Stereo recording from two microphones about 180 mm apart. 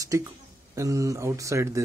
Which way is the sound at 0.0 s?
20° right (ahead or behind).